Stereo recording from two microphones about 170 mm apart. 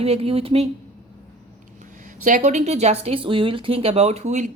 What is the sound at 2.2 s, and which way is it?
Speech, 45° right (ahead or behind).